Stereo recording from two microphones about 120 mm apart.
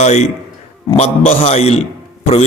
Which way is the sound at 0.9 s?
65° left (ahead or behind).